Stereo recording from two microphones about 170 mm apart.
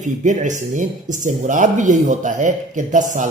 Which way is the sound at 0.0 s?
45° right (ahead or behind).